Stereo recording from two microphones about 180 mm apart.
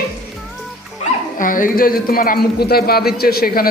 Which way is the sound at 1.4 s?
50° left (ahead or behind).